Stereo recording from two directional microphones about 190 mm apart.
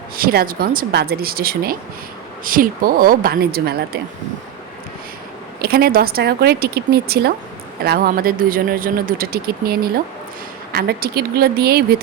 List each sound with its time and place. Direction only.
0.2 s speech: 50° right (ahead or behind)
5.6 s speech: 55° right (ahead or behind)